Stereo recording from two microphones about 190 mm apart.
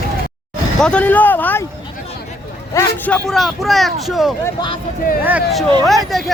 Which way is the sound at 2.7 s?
10° left (ahead or behind).